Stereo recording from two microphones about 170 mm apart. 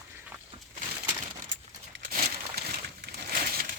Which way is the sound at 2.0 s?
60° right (ahead or behind).